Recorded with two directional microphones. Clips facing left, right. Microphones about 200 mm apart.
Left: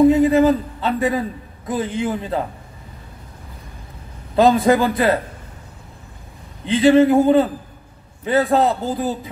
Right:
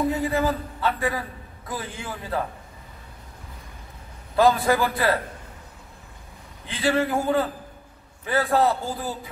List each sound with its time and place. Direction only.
0.0 s a sound: 20° left (ahead or behind)
1.7 s a man's voice: 20° left (ahead or behind)
4.4 s a man's voice: 20° left (ahead or behind)
6.6 s a man's voice: 20° left (ahead or behind)